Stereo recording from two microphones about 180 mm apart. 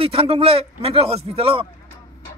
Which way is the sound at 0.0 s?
30° right (ahead or behind).